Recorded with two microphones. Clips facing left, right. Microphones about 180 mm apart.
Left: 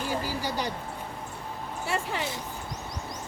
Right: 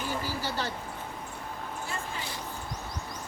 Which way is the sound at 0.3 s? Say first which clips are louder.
Left 2 dB; 15° left (ahead or behind).